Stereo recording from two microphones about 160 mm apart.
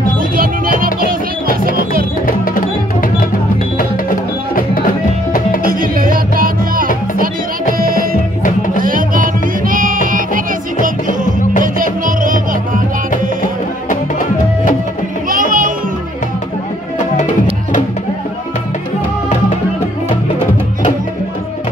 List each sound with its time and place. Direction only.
2.2 s music: 60° left (ahead or behind)
5.6 s music: 60° right (ahead or behind)
15.2 s music: 60° right (ahead or behind)